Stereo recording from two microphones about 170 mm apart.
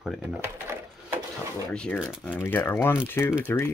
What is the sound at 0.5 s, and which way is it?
Sewing machine, 15° right (ahead or behind).